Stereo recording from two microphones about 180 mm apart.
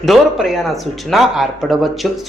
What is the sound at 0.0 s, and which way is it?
Speech, centre (ahead or behind).